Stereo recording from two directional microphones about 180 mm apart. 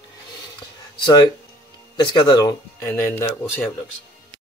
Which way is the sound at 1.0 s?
25° left (ahead or behind).